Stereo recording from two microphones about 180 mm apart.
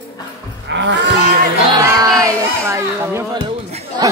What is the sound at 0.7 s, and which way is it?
Music, 85° right.